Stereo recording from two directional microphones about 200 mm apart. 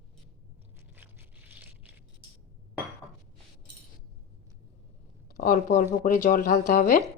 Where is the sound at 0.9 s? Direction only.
10° right (ahead or behind).